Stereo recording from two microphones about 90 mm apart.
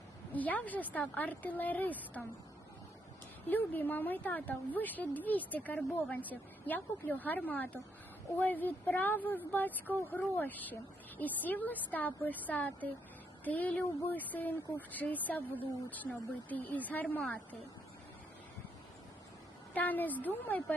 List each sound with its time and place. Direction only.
0.3 s a woman's voice: 20° left (ahead or behind)
3.4 s a woman's voice: 20° left (ahead or behind)
19.7 s a woman's voice: 20° left (ahead or behind)